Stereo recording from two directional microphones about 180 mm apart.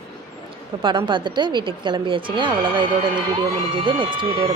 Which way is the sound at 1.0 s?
25° right (ahead or behind).